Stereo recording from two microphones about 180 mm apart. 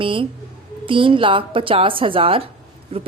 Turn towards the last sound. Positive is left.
turn(degrees=-35)  # may be behind; listen again after turning